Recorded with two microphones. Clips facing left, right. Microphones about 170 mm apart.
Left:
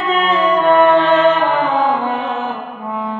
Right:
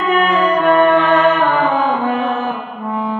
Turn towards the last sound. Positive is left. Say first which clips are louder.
# left 1 dB
turn(degrees=25)  # may be behind; listen again after turning